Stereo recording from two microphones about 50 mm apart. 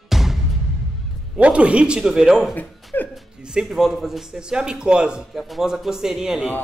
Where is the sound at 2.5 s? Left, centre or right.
Left.